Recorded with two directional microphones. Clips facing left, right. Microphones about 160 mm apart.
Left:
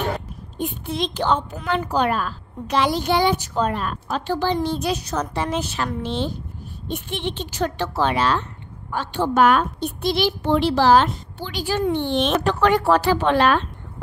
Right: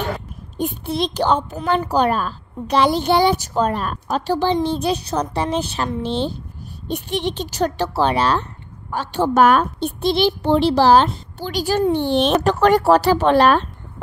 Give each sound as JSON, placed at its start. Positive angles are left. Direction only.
{"t": 0.6, "sound": "a woman's voice", "side_deg": -35}
{"t": 9.8, "sound": "a woman's voice", "side_deg": -30}